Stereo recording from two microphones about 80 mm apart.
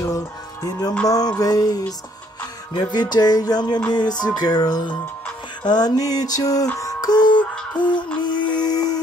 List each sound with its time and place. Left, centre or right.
0.0 s music: left
2.9 s music: left
8.6 s a sound: left